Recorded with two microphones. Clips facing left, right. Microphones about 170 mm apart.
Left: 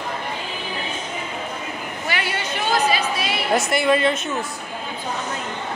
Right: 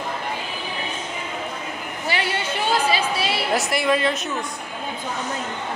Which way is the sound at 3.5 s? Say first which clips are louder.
Left 4 dB; centre (ahead or behind).